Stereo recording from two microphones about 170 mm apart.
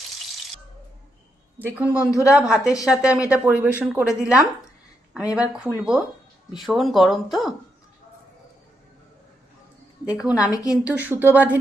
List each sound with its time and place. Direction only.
1.5 s speech: 10° right (ahead or behind)
10.1 s speech: 10° right (ahead or behind)
10.5 s a woman's voice: 20° left (ahead or behind)
10.8 s speech: 10° right (ahead or behind)